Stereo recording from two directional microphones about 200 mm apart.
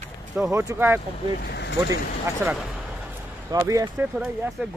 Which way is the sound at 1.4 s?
55° left (ahead or behind).